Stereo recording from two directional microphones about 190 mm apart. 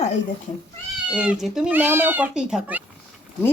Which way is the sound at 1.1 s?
5° right (ahead or behind).